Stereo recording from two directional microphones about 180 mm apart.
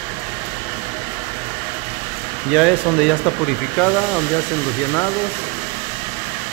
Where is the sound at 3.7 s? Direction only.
10° left (ahead or behind).